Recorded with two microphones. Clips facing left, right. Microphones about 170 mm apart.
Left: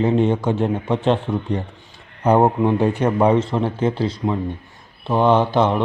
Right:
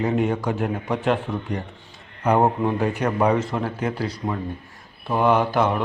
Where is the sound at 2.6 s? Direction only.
30° left (ahead or behind).